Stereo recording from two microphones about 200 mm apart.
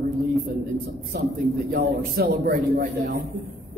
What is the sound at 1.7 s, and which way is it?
A man's voice, 45° right (ahead or behind).